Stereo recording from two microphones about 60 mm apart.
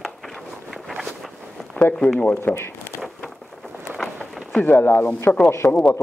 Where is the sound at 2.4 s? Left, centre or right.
Left.